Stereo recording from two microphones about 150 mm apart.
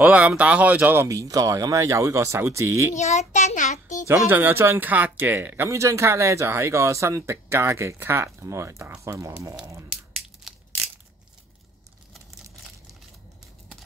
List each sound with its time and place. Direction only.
0.0 s speech: 10° right (ahead or behind)
3.0 s a child's voice: 50° left (ahead or behind)
4.1 s speech: 15° right (ahead or behind)
9.8 s a sound: centre (ahead or behind)